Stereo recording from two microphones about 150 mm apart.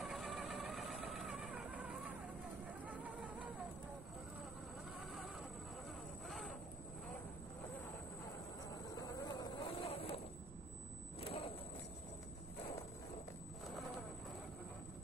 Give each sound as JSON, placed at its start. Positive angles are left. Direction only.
{"t": 0.0, "sound": "vehicle", "side_deg": 0}
{"t": 2.9, "sound": "music", "side_deg": -10}
{"t": 6.2, "sound": "vehicle", "side_deg": 0}
{"t": 8.9, "sound": "a sound", "side_deg": 25}
{"t": 11.1, "sound": "vehicle", "side_deg": 40}